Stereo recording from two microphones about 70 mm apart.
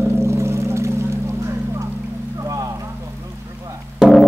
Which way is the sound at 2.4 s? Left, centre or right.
Right.